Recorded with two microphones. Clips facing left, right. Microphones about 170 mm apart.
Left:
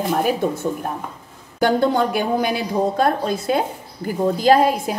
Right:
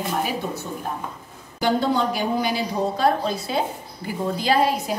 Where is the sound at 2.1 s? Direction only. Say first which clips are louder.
Left 3 dB; 55° left (ahead or behind).